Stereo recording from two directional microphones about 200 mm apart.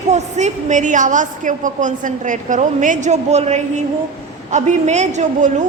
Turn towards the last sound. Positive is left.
turn(degrees=-35)  # may be behind; listen again after turning